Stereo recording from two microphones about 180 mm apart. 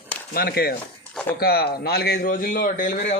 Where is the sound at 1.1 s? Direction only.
5° left (ahead or behind).